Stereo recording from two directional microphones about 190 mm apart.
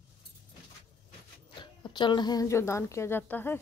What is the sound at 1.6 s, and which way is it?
A woman's voice, 25° left (ahead or behind).